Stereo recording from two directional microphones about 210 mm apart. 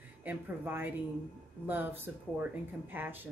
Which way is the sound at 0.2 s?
10° right (ahead or behind).